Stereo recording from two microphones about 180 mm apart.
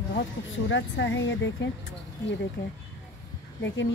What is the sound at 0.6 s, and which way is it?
Speech, 90° left.